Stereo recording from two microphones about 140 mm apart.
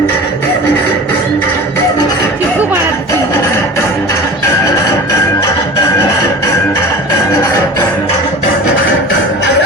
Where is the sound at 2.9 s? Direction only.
20° left (ahead or behind).